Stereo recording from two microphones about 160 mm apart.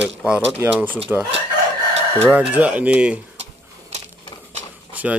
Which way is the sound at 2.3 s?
10° right (ahead or behind).